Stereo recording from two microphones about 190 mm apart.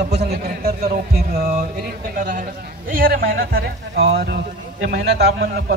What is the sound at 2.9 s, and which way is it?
A man's voice, 50° right (ahead or behind).